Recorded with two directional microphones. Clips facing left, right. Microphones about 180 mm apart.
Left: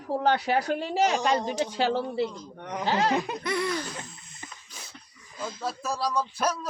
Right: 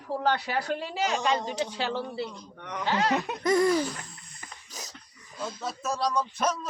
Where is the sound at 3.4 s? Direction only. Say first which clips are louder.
Right 6 dB; 45° right (ahead or behind).